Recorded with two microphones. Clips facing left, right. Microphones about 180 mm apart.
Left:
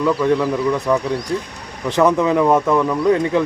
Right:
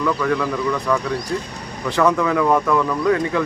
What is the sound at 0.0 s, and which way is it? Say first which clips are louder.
Speech: left 4 dB; 25° left (ahead or behind).